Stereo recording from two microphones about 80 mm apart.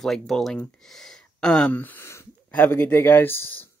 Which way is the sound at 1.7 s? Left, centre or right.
Left.